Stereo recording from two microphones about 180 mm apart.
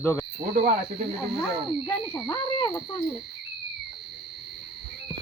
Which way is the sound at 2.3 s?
25° left (ahead or behind).